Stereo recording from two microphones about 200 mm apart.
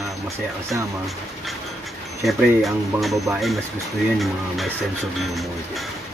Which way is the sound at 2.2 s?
Centre (ahead or behind).